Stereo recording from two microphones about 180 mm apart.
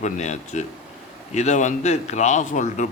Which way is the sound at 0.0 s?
40° left (ahead or behind).